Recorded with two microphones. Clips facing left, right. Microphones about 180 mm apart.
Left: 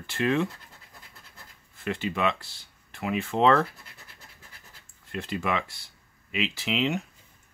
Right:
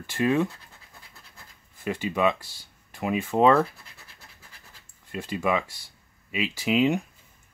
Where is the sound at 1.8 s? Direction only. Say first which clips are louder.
Right 3 dB; 15° right (ahead or behind).